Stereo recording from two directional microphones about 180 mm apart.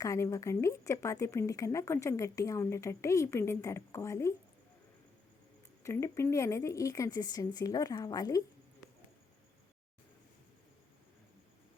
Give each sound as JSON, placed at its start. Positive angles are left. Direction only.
{"t": 0.0, "sound": "speech", "side_deg": 15}
{"t": 5.8, "sound": "speech", "side_deg": 15}